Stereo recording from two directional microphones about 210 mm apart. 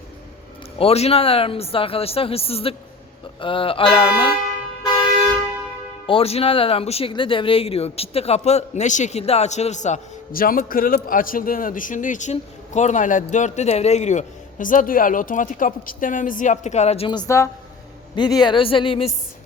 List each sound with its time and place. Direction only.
0.8 s speech: 30° left (ahead or behind)
6.1 s speech: 25° left (ahead or behind)